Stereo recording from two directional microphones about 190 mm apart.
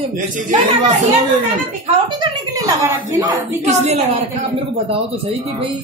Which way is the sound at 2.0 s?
25° right (ahead or behind).